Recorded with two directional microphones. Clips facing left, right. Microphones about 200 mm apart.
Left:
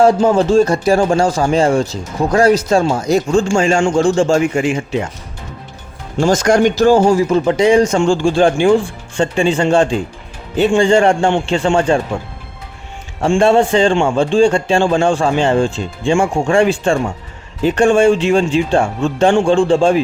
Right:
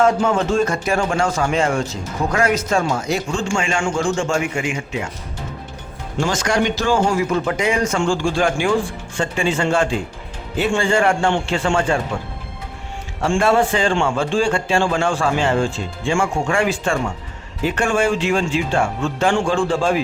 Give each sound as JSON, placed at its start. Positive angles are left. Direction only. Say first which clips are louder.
{"t": 0.0, "sound": "speech", "louder": "left 6 dB", "side_deg": 35}
{"t": 6.1, "sound": "speech", "louder": "left 7 dB", "side_deg": 40}
{"t": 13.2, "sound": "speech", "louder": "left 5 dB", "side_deg": 25}